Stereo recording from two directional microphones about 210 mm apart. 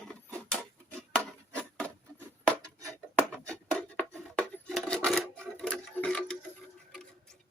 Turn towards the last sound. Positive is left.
turn(degrees=5)  # may be behind; listen again after turning